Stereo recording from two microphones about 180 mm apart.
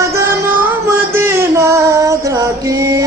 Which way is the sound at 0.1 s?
15° right (ahead or behind).